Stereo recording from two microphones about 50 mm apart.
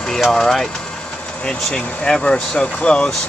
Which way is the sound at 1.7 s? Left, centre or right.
Centre.